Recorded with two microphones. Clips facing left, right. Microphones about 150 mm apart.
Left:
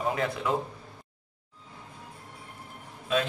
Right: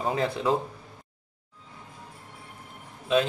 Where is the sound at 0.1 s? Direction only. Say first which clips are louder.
Right 2 dB; 30° right (ahead or behind).